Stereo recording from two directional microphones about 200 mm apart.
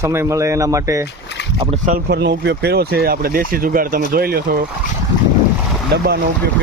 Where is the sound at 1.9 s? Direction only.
55° right (ahead or behind).